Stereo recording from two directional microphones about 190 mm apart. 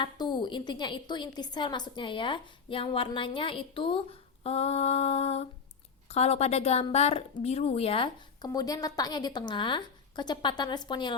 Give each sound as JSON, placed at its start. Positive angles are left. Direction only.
{"t": 0.0, "sound": "a woman's voice", "side_deg": 25}